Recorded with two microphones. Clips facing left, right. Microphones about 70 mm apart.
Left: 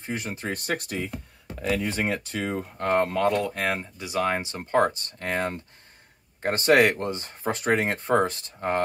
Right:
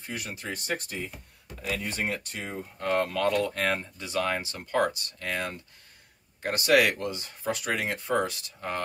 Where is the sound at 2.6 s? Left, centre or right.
Left.